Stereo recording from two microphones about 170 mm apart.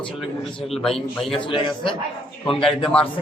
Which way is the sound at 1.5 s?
30° left (ahead or behind).